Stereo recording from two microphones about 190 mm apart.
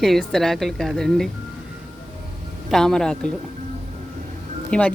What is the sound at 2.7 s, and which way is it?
Speech, centre (ahead or behind).